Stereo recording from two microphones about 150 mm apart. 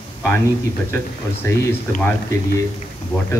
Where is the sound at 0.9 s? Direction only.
15° left (ahead or behind).